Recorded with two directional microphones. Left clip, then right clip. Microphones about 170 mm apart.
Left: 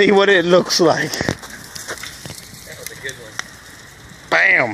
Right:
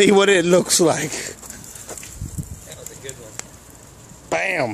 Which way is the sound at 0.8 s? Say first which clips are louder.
Left 3 dB; 5° right (ahead or behind).